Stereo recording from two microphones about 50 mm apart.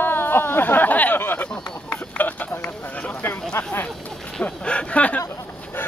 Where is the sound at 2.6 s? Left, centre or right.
Left.